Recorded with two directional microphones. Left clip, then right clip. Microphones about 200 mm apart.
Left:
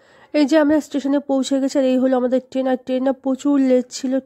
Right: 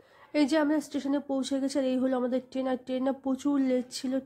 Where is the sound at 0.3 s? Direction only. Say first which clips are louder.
Left 11 dB; 35° left (ahead or behind).